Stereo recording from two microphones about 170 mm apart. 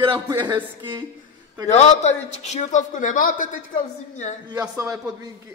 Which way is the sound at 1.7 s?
40° left (ahead or behind).